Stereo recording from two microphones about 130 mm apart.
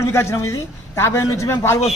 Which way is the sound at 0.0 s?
20° left (ahead or behind).